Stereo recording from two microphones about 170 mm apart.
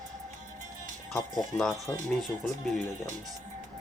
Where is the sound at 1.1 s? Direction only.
5° left (ahead or behind).